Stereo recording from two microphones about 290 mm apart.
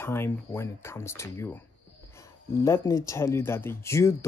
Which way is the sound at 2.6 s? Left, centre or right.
Centre.